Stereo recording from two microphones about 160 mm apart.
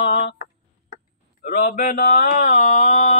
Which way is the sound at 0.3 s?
60° left (ahead or behind).